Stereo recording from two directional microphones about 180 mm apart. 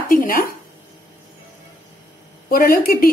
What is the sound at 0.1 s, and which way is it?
Speech, 50° left (ahead or behind).